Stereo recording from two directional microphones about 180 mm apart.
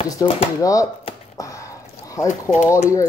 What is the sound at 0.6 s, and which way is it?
Speech, 20° left (ahead or behind).